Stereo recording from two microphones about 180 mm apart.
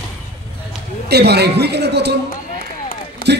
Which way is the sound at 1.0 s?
65° right (ahead or behind).